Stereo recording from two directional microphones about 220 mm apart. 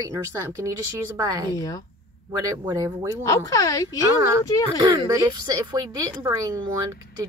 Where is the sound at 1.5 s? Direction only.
15° left (ahead or behind).